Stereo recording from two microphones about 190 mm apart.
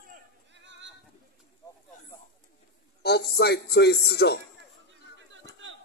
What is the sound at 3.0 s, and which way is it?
A man's voice, 60° left (ahead or behind).